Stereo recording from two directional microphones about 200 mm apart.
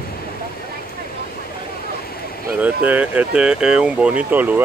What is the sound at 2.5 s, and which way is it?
Speech, 5° right (ahead or behind).